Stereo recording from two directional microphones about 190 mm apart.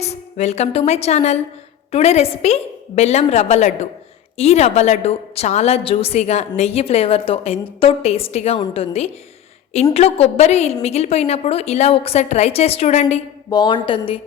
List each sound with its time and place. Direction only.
0.0 s a woman's voice: 35° left (ahead or behind)
13.5 s a woman's voice: 25° left (ahead or behind)